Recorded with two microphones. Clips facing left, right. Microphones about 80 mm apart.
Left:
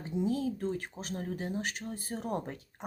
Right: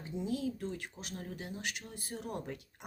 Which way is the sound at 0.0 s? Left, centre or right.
Left.